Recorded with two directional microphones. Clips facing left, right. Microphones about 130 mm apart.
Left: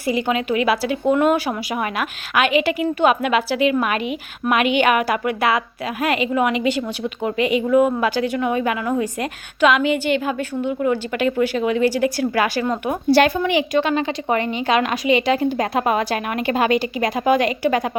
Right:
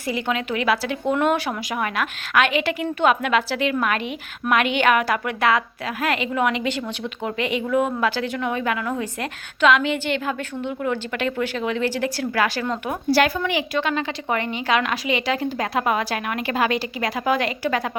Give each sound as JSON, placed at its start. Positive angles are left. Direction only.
{"t": 0.1, "sound": "a woman's voice", "side_deg": 15}
{"t": 1.7, "sound": "a woman's voice", "side_deg": 15}
{"t": 12.9, "sound": "a woman's voice", "side_deg": 25}